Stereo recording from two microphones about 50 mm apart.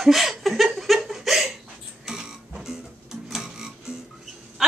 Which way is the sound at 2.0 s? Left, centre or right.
Centre.